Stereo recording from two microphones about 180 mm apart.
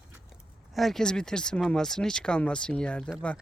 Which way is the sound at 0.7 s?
Centre (ahead or behind).